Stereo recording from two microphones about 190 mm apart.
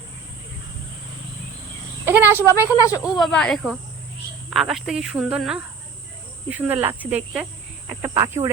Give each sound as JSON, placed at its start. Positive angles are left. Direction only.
{"t": 2.0, "sound": "insect", "side_deg": -10}
{"t": 2.7, "sound": "speech", "side_deg": 20}
{"t": 3.0, "sound": "speech", "side_deg": 0}